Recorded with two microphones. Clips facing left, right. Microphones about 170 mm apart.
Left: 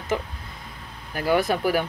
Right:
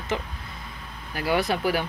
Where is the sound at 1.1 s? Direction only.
50° left (ahead or behind).